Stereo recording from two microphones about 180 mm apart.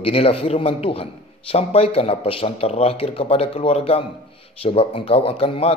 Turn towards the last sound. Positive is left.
turn(degrees=30)  # may be behind; listen again after turning